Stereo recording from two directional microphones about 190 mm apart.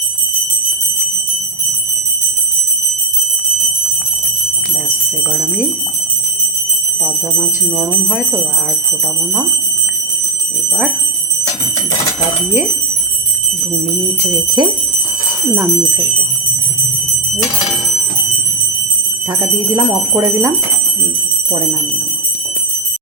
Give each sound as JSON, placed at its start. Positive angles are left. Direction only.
{"t": 14.2, "sound": "speech", "side_deg": -20}
{"t": 19.7, "sound": "speech", "side_deg": -15}